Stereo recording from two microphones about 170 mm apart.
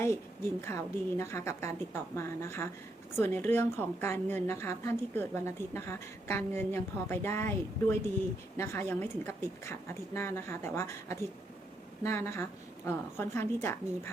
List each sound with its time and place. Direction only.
0.6 s a woman's voice: 15° left (ahead or behind)